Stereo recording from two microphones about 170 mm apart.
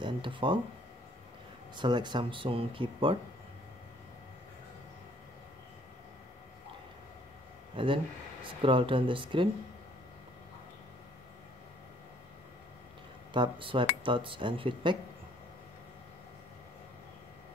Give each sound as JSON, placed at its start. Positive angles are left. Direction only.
{"t": 0.0, "sound": "speech", "side_deg": -30}
{"t": 1.8, "sound": "speech", "side_deg": -25}
{"t": 7.7, "sound": "speech", "side_deg": -30}
{"t": 13.3, "sound": "speech", "side_deg": -30}